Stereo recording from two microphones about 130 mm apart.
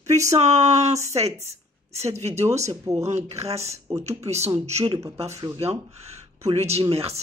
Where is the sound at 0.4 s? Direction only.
60° right (ahead or behind).